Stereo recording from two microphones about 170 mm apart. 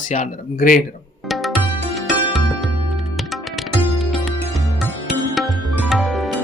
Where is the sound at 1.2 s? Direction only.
Centre (ahead or behind).